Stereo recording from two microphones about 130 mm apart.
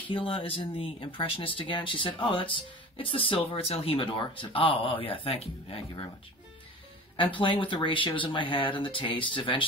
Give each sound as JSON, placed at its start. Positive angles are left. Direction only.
{"t": 0.1, "sound": "speech", "side_deg": 40}
{"t": 7.2, "sound": "speech", "side_deg": 40}